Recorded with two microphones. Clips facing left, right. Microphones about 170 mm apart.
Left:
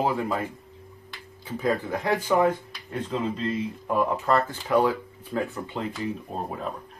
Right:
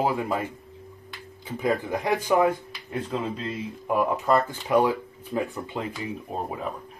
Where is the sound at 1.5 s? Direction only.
15° right (ahead or behind).